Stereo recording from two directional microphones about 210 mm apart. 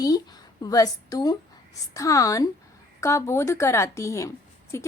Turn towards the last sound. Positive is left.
turn(degrees=15)  # may be behind; listen again after turning